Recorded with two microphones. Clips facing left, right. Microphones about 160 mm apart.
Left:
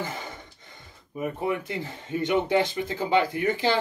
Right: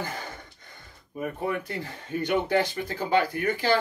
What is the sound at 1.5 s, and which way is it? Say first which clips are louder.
Speech: left 2 dB; 20° left (ahead or behind).